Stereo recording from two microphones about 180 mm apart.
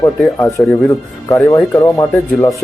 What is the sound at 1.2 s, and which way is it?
Speech, 15° left (ahead or behind).